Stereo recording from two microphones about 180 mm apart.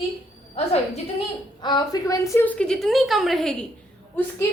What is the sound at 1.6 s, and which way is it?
A woman's voice, 25° left (ahead or behind).